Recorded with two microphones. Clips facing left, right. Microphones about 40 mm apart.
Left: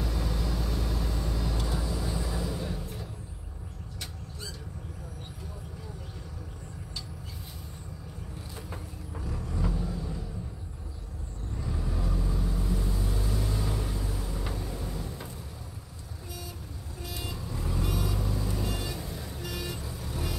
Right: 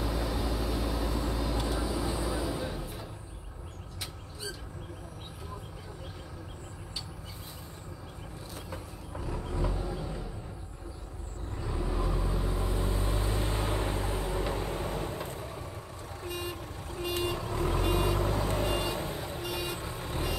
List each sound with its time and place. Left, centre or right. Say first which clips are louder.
0.0 s vehicle: right 2 dB; centre
9.1 s vehicle: right 1 dB; centre
11.5 s vehicle: right 2 dB; centre; by 20.3 s right